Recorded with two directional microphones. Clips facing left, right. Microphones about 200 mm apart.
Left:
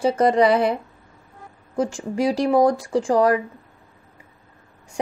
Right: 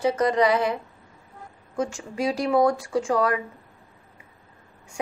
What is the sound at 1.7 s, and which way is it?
A woman's voice, 35° left (ahead or behind).